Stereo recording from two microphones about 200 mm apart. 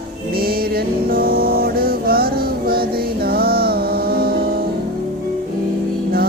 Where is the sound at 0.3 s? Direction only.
50° right (ahead or behind).